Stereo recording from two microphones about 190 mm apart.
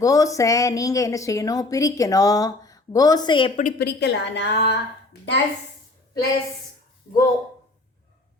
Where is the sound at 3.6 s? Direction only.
50° left (ahead or behind).